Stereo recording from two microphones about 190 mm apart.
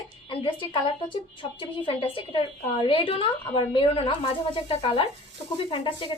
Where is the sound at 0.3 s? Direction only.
25° left (ahead or behind).